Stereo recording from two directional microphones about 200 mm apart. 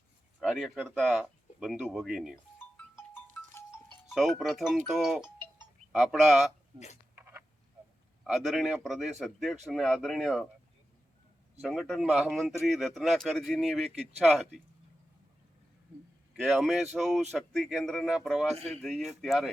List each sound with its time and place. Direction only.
0.4 s speech: centre (ahead or behind)
2.6 s music: 10° left (ahead or behind)
4.1 s speech: centre (ahead or behind)
6.7 s speech: 35° left (ahead or behind)
7.2 s frog: 10° right (ahead or behind)
8.2 s speech: centre (ahead or behind)
11.6 s speech: centre (ahead or behind)
16.3 s speech: centre (ahead or behind)